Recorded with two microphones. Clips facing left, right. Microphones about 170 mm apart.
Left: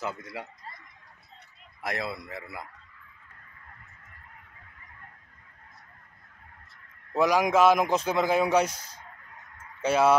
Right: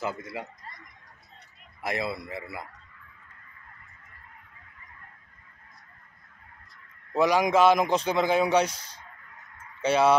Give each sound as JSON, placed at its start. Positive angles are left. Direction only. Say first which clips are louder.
{"t": 0.0, "sound": "a man's voice", "louder": "right 2 dB", "side_deg": 0}
{"t": 1.9, "sound": "a man's voice", "louder": "right 2 dB", "side_deg": 0}
{"t": 7.2, "sound": "a man's voice", "louder": "right 1 dB", "side_deg": 5}
{"t": 8.7, "sound": "speech", "louder": "left 1 dB", "side_deg": -30}
{"t": 9.8, "sound": "speech", "louder": "even", "side_deg": 5}